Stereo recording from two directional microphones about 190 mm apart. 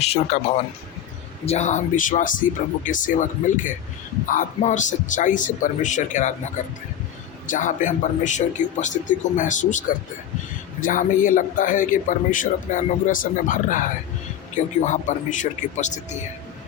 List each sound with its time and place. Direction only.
0.0 s a man's voice: 35° left (ahead or behind)
7.4 s speech: 40° left (ahead or behind)
10.8 s a man's voice: 45° left (ahead or behind)